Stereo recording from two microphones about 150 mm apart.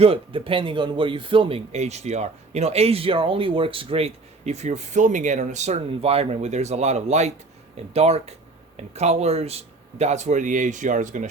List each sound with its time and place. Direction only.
0.0 s speech: 35° right (ahead or behind); by 11.3 s 55° right (ahead or behind)